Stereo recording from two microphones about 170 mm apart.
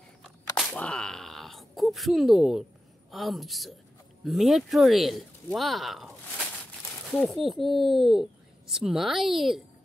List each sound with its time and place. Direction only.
0.6 s speech: 5° left (ahead or behind)